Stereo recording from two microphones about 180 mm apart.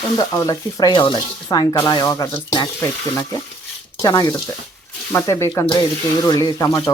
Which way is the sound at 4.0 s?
20° left (ahead or behind).